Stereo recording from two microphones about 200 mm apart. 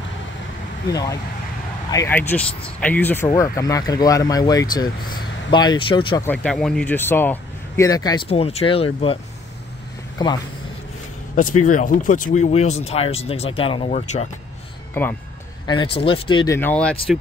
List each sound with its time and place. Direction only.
1.9 s speech: 15° left (ahead or behind)
6.2 s speech: 5° left (ahead or behind)
8.3 s speech: 30° left (ahead or behind)
11.4 s speech: 40° left (ahead or behind)
15.6 s speech: 20° left (ahead or behind)
16.5 s speech: 5° left (ahead or behind)